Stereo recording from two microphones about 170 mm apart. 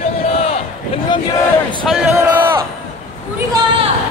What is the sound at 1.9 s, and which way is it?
Speech, 5° right (ahead or behind).